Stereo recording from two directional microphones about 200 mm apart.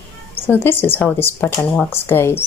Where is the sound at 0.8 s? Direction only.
10° left (ahead or behind).